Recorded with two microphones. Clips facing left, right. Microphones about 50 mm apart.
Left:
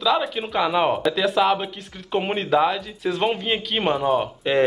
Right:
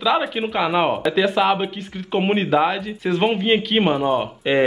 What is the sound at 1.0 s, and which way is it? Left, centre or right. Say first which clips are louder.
Speech: right 2 dB; centre.